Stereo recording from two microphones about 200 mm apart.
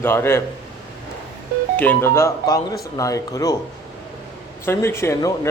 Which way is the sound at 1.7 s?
10° left (ahead or behind).